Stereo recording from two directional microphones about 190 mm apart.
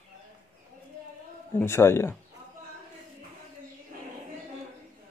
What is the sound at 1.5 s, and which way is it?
Speech, 15° left (ahead or behind).